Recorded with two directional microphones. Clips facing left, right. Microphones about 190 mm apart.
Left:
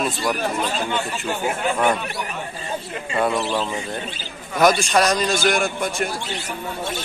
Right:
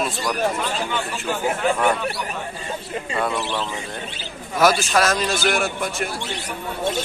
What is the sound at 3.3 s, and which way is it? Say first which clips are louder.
Speech: left 3 dB; 20° left (ahead or behind).